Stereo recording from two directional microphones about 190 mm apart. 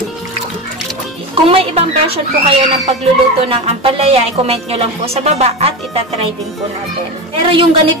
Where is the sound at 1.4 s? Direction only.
30° right (ahead or behind).